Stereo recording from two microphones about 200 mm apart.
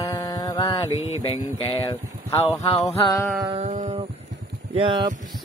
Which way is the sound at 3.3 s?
25° right (ahead or behind).